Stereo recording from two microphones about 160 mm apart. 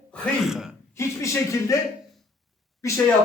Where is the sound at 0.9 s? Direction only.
20° left (ahead or behind).